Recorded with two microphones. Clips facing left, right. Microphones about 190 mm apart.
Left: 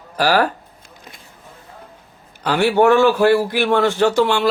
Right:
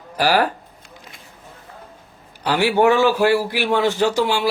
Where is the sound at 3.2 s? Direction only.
10° right (ahead or behind).